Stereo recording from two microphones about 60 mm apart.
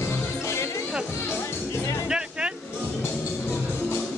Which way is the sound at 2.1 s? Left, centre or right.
Centre.